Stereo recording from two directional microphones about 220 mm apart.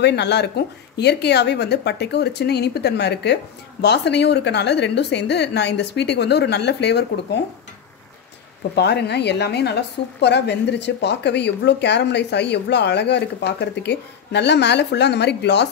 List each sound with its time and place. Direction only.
0.0 s a woman's voice: 50° left (ahead or behind)
8.7 s a woman's voice: 50° left (ahead or behind)